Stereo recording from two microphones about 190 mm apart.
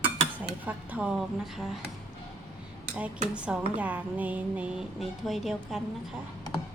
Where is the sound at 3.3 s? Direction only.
5° right (ahead or behind).